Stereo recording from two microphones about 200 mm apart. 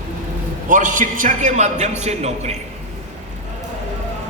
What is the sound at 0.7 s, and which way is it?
A man's voice, 40° right (ahead or behind).